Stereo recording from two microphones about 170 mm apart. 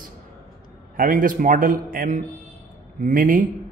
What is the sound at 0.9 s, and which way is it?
Speech, 55° right (ahead or behind).